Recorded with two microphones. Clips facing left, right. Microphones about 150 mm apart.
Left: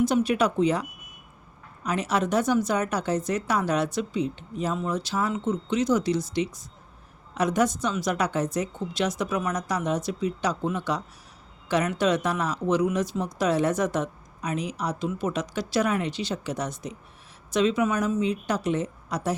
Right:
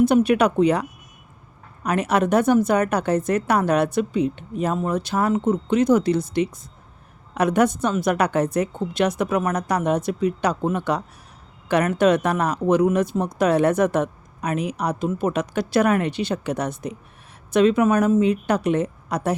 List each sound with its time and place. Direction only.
0.0 s speech: 60° right (ahead or behind)